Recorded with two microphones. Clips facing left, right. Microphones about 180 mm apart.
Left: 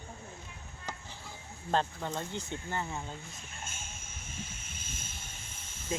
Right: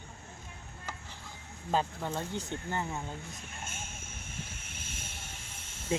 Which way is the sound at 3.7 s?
60° right (ahead or behind).